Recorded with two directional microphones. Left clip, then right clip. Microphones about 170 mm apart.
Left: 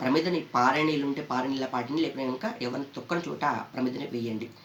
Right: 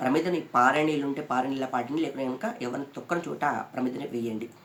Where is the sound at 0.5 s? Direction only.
35° right (ahead or behind).